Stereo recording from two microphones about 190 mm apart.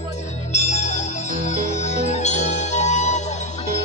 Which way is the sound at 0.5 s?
35° left (ahead or behind).